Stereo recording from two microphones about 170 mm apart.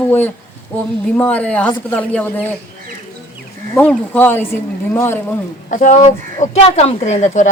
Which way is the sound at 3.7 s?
10° left (ahead or behind).